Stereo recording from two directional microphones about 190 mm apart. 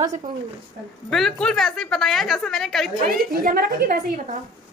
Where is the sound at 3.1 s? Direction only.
50° right (ahead or behind).